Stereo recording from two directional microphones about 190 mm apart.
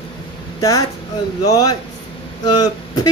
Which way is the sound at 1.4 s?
20° left (ahead or behind).